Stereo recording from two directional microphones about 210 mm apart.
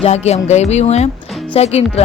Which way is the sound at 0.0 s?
30° left (ahead or behind).